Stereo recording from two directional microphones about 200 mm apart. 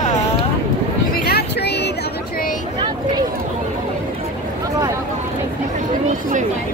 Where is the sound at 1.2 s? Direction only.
50° left (ahead or behind).